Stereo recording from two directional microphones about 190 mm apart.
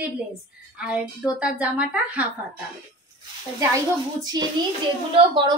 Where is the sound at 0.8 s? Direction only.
5° right (ahead or behind).